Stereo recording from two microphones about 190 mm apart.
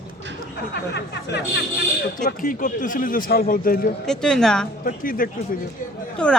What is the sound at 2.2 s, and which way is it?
A man's voice, 45° left (ahead or behind).